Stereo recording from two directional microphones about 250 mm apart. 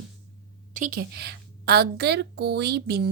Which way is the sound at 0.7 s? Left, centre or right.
Right.